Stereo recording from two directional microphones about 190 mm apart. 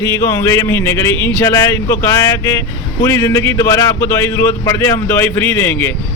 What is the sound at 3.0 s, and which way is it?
Speech, 15° left (ahead or behind).